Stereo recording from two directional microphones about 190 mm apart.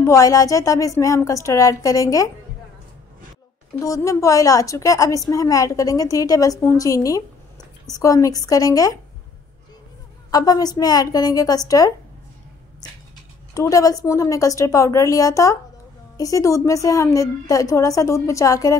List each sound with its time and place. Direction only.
0.0 s a woman's voice: 15° left (ahead or behind)
3.8 s a woman's voice: 15° left (ahead or behind)
10.3 s a woman's voice: 20° left (ahead or behind)
13.6 s a woman's voice: 20° left (ahead or behind)